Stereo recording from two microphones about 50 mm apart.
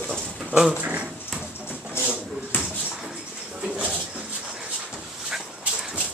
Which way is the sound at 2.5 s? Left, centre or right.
Left.